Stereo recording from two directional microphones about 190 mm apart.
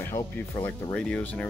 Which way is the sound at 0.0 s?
10° left (ahead or behind).